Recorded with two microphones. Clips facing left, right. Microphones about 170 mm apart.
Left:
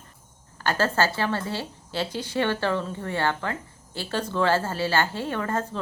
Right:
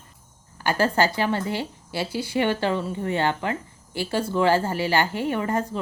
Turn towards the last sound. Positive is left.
turn(degrees=-15)  # may be behind; listen again after turning